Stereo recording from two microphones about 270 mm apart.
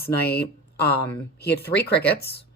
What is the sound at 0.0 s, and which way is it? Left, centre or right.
Speech, left.